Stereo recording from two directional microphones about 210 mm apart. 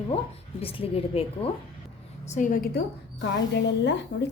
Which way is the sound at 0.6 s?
25° left (ahead or behind).